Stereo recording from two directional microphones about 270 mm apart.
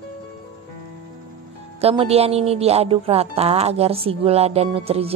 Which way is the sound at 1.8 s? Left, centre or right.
Right.